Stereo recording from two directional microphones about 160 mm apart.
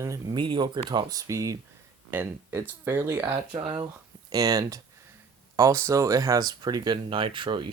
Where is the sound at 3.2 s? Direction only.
30° right (ahead or behind).